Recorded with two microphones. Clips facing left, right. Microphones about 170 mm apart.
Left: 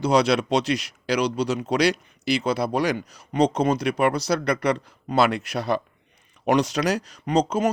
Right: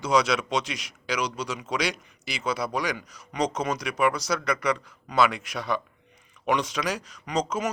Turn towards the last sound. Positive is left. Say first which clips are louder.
# left 6 dB
turn(degrees=30)  # may be behind; listen again after turning